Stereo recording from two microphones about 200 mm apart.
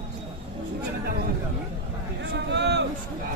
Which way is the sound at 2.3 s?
60° right (ahead or behind).